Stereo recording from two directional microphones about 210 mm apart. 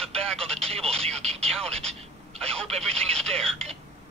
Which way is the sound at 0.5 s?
30° right (ahead or behind).